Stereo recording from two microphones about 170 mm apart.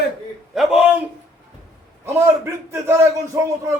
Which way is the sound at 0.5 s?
Centre (ahead or behind).